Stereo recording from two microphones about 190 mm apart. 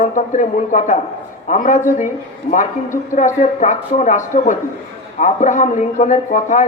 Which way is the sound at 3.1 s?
40° left (ahead or behind).